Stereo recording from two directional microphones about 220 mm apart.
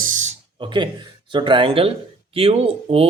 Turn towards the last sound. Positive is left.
turn(degrees=-25)  # may be behind; listen again after turning